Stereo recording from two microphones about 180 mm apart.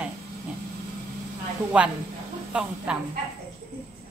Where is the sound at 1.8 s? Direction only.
5° right (ahead or behind).